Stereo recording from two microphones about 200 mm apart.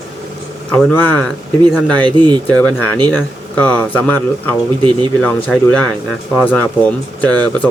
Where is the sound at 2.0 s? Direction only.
20° right (ahead or behind).